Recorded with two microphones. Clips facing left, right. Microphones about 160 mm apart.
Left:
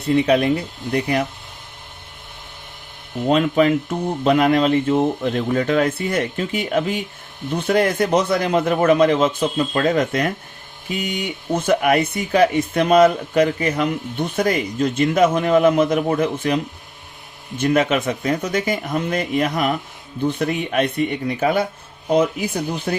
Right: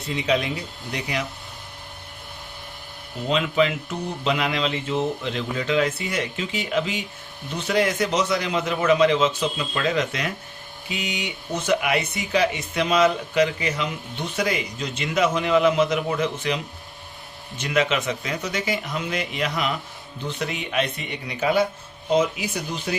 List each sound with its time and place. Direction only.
0.0 s speech: 55° left (ahead or behind)
3.2 s speech: 50° left (ahead or behind)
17.6 s speech: 50° left (ahead or behind)